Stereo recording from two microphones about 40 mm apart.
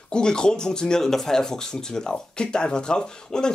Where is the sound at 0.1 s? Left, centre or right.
Centre.